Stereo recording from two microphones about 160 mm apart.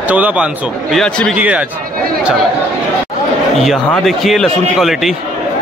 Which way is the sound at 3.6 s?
Centre (ahead or behind).